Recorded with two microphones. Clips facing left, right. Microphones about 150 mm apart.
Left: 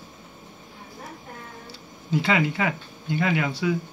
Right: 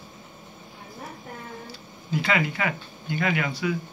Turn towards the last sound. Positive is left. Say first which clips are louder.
# left 2 dB
turn(degrees=25)  # may be behind; listen again after turning